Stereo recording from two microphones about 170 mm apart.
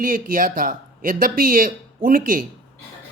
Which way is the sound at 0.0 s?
55° right (ahead or behind).